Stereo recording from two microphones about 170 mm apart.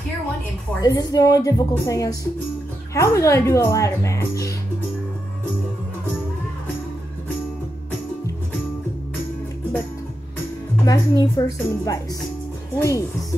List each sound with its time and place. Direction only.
0.7 s a woman's voice: 25° left (ahead or behind)
10.9 s a woman's voice: 20° left (ahead or behind)